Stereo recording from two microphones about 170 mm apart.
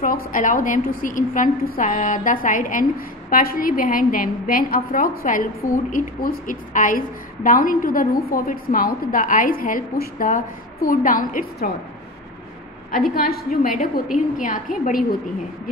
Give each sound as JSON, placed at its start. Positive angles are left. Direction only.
{"t": 0.0, "sound": "a woman's voice", "side_deg": 55}
{"t": 12.9, "sound": "a woman's voice", "side_deg": 60}